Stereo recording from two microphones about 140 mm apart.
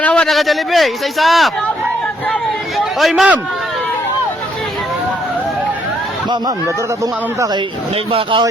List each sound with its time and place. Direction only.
0.0 s speech: 10° left (ahead or behind); by 3.4 s 5° right (ahead or behind)
7.0 s speech: 25° right (ahead or behind)
8.1 s speech: 35° right (ahead or behind)